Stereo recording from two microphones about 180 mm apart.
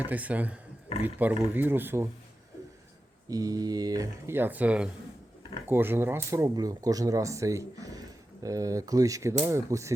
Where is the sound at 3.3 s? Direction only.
20° right (ahead or behind).